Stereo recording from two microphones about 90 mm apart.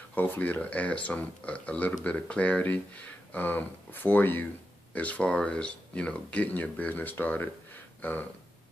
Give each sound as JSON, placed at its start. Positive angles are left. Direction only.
{"t": 0.1, "sound": "speech", "side_deg": 20}